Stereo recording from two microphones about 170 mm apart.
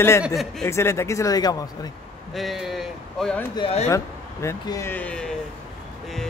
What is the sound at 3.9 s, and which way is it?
A man's voice, 20° left (ahead or behind).